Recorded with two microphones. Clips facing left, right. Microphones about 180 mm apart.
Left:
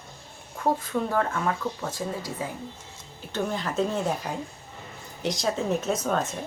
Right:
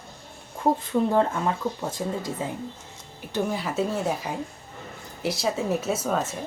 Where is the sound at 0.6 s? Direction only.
25° right (ahead or behind).